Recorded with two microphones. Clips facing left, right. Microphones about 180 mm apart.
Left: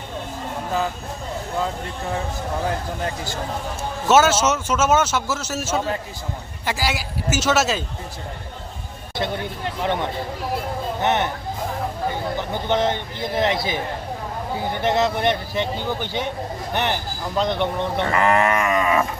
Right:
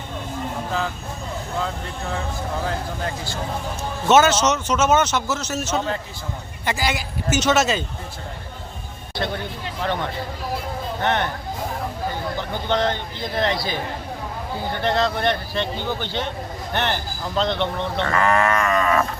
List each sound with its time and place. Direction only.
4.1 s a man's voice: 5° left (ahead or behind)
9.8 s a man's voice: 15° left (ahead or behind)
12.4 s a man's voice: 15° left (ahead or behind)